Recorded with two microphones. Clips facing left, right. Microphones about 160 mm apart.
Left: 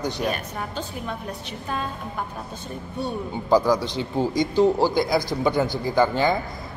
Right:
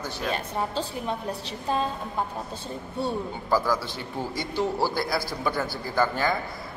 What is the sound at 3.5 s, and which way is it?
A man's voice, 20° left (ahead or behind).